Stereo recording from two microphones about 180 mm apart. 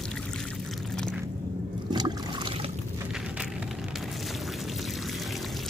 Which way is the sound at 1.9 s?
25° right (ahead or behind).